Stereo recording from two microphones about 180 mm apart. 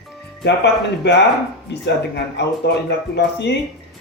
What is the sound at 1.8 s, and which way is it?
Speech, 70° left (ahead or behind).